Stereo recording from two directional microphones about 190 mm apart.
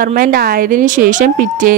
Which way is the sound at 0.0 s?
50° right (ahead or behind).